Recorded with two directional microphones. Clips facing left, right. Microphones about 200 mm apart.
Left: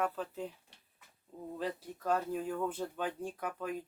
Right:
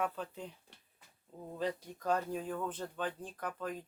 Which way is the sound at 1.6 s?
5° left (ahead or behind).